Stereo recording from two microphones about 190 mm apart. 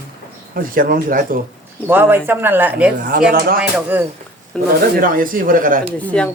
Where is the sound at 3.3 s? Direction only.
55° right (ahead or behind).